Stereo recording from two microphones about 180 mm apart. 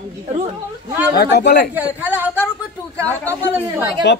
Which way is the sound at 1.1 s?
60° left (ahead or behind).